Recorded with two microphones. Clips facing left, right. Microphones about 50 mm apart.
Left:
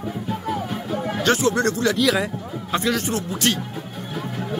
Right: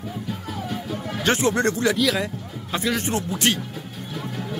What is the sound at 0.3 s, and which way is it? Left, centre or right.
Music, left.